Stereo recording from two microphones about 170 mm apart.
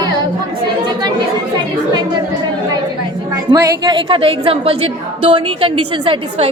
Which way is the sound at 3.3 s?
20° right (ahead or behind).